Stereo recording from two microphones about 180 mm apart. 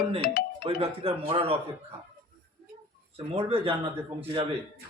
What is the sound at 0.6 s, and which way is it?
Speech, 35° right (ahead or behind).